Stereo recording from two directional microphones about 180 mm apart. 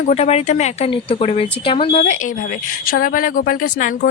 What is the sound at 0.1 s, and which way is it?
Speech, 35° left (ahead or behind).